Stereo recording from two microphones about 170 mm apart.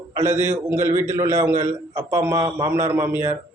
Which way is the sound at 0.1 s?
15° right (ahead or behind).